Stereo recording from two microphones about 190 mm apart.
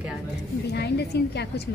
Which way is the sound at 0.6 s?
60° left (ahead or behind).